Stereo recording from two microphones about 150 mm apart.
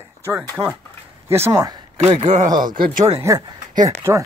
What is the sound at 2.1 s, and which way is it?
Speech, 50° right (ahead or behind).